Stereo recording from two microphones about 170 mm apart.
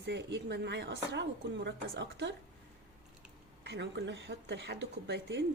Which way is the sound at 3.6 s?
90° right.